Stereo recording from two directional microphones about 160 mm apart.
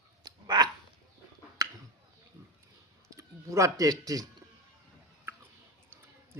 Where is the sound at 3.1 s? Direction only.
20° right (ahead or behind).